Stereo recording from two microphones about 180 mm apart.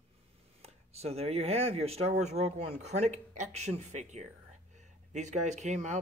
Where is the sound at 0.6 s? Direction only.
35° right (ahead or behind).